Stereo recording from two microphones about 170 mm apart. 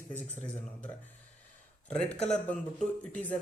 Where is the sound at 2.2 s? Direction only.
5° left (ahead or behind).